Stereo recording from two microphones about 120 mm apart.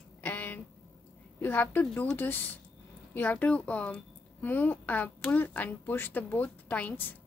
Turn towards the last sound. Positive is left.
turn(degrees=15)  # may be behind; listen again after turning